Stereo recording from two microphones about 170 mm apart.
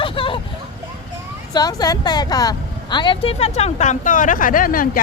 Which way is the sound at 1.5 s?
20° left (ahead or behind).